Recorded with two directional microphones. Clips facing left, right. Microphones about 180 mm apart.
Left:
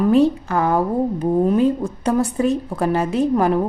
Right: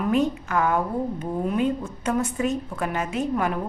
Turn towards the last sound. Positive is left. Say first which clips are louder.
# left 8 dB
turn(degrees=35)  # may be behind; listen again after turning